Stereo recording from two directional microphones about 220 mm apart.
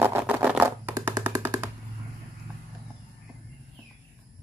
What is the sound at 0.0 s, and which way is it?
Music, 10° right (ahead or behind).